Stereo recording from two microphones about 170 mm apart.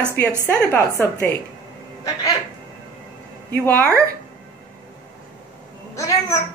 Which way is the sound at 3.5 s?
10° left (ahead or behind).